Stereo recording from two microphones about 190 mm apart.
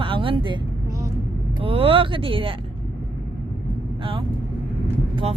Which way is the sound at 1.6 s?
30° right (ahead or behind).